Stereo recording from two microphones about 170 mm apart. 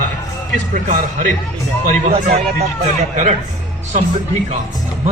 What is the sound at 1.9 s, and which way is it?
Speech, 40° right (ahead or behind).